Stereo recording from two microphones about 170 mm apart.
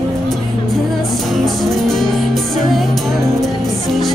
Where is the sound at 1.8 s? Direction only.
Centre (ahead or behind).